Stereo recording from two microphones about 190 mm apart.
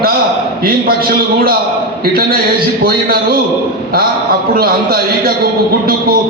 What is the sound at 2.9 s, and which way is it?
Speech, 50° right (ahead or behind).